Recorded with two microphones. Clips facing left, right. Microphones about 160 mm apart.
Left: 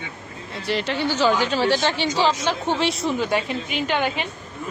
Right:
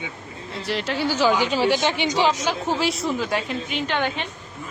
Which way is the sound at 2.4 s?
Centre (ahead or behind).